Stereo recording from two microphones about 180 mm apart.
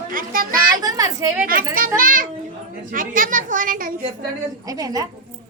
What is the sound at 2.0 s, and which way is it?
A woman's voice, 50° right (ahead or behind).